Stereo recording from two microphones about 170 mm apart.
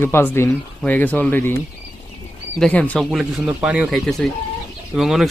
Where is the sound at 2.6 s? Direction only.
5° left (ahead or behind).